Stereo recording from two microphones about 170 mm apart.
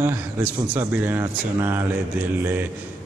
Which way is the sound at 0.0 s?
15° right (ahead or behind).